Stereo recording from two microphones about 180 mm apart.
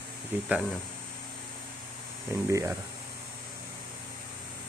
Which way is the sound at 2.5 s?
15° right (ahead or behind).